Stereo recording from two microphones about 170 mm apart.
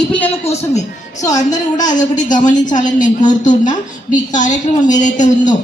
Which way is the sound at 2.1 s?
50° left (ahead or behind).